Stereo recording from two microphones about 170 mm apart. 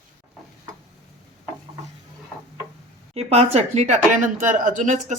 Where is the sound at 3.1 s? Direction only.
40° right (ahead or behind).